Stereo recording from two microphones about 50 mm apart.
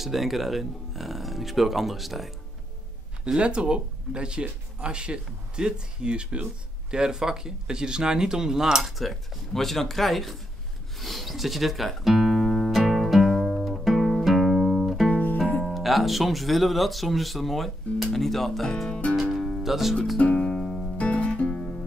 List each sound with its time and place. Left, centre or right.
0.0 s speech: centre
3.3 s speech: right; by 10.3 s centre
11.0 s music: centre
15.0 s music: left
15.6 s speech: centre
19.1 s music: centre
19.6 s speech: centre
20.2 s music: left